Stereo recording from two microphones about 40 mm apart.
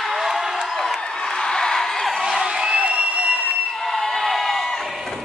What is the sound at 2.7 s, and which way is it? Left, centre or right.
Crowd, right.